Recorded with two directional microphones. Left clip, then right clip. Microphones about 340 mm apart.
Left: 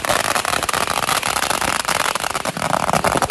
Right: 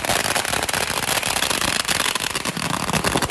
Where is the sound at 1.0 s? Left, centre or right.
Centre.